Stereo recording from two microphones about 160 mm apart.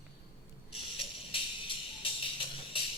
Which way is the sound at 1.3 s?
35° left (ahead or behind).